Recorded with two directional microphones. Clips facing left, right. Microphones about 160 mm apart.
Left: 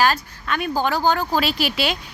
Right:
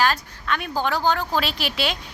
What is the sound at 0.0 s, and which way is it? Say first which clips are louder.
Speech: left 2 dB; 5° left (ahead or behind).